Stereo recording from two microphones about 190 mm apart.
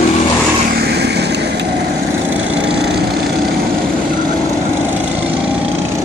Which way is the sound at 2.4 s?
5° right (ahead or behind).